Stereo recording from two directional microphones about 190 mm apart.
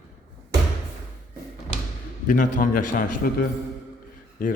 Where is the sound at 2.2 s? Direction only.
45° left (ahead or behind).